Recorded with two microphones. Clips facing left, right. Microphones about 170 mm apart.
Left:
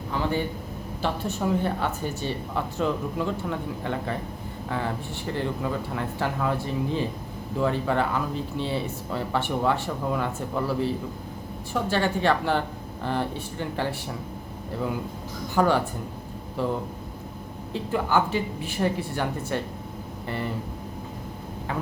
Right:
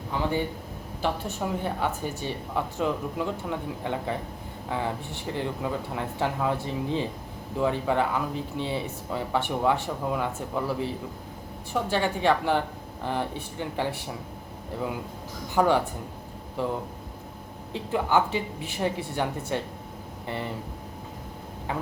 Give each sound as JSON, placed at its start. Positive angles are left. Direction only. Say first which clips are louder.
{"t": 0.1, "sound": "a sound", "louder": "left 1 dB", "side_deg": -15}
{"t": 1.0, "sound": "speech", "louder": "left 2 dB", "side_deg": -10}
{"t": 15.5, "sound": "speech", "louder": "even", "side_deg": -20}
{"t": 17.7, "sound": "speech", "louder": "even", "side_deg": -20}